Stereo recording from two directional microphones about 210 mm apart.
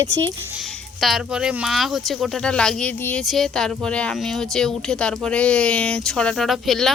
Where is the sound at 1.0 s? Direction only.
Centre (ahead or behind).